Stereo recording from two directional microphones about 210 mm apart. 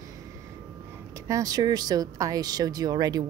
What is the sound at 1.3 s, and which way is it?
Speech, 15° right (ahead or behind).